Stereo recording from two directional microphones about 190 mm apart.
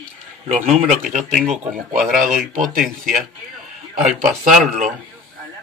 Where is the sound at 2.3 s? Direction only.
45° right (ahead or behind).